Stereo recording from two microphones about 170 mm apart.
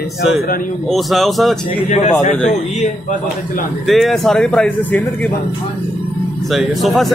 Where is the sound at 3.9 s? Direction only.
Centre (ahead or behind).